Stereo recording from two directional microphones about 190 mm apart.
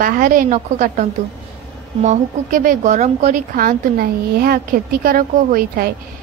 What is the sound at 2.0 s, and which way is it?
Speech, 45° right (ahead or behind).